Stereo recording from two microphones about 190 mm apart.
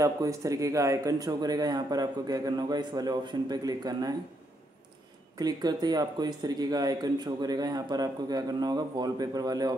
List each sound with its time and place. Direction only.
0.0 s speech: 15° right (ahead or behind)
5.4 s speech: 20° right (ahead or behind)